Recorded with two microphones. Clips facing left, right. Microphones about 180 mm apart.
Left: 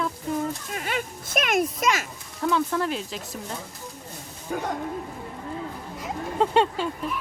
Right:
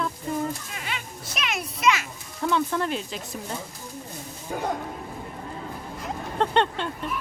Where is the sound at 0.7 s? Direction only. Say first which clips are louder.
Left 6 dB; 45° left (ahead or behind).